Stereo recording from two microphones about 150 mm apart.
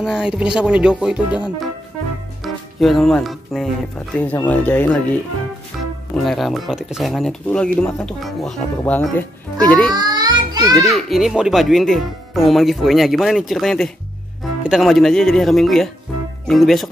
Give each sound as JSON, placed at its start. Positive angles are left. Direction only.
{"t": 0.0, "sound": "speech", "side_deg": -5}
{"t": 4.5, "sound": "speech", "side_deg": 10}
{"t": 5.7, "sound": "music", "side_deg": 0}
{"t": 6.1, "sound": "speech", "side_deg": 0}
{"t": 9.9, "sound": "child singing", "side_deg": -25}
{"t": 10.8, "sound": "speech", "side_deg": 0}